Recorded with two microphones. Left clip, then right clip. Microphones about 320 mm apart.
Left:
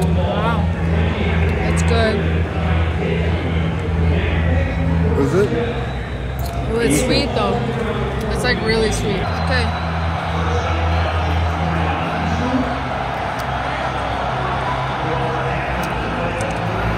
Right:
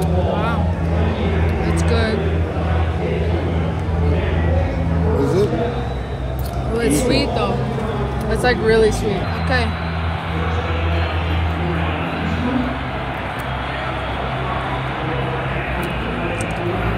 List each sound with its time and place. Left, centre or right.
1.9 s vehicle: centre
6.8 s music: centre
8.5 s speech: right